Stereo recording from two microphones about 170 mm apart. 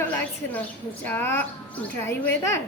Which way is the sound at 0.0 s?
10° left (ahead or behind).